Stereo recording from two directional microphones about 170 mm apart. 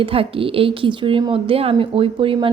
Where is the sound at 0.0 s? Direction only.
35° right (ahead or behind).